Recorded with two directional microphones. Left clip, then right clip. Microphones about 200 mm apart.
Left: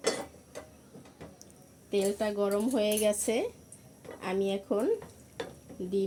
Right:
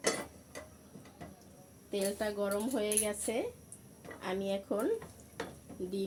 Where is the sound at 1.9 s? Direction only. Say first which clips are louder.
Left 5 dB; 40° left (ahead or behind); by 3.4 s 60° left (ahead or behind).